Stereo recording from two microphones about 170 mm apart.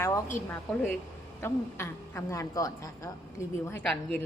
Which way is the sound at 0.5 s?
10° left (ahead or behind).